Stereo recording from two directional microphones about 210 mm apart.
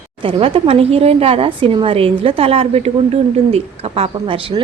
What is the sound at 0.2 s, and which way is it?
A woman's voice, 25° right (ahead or behind).